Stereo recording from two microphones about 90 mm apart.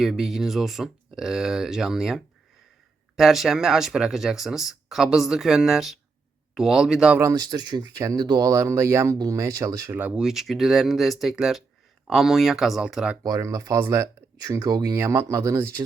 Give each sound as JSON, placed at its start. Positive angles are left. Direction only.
{"t": 0.0, "sound": "speech", "side_deg": -5}
{"t": 7.3, "sound": "speech", "side_deg": -50}
{"t": 9.9, "sound": "speech", "side_deg": -20}
{"t": 10.2, "sound": "speech", "side_deg": -5}
{"t": 13.2, "sound": "speech", "side_deg": -40}
{"t": 14.4, "sound": "speech", "side_deg": -45}
{"t": 14.9, "sound": "speech", "side_deg": -30}